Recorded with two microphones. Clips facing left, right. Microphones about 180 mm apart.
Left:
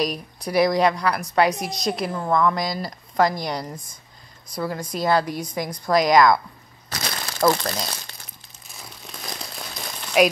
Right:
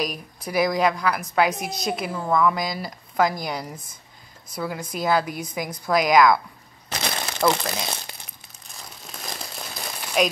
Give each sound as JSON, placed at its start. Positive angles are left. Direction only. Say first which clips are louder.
{"t": 0.0, "sound": "a woman's voice", "louder": "left 3 dB", "side_deg": -5}
{"t": 6.9, "sound": "crumpling", "louder": "right 2 dB", "side_deg": -20}
{"t": 9.2, "sound": "crumpling", "louder": "even", "side_deg": 0}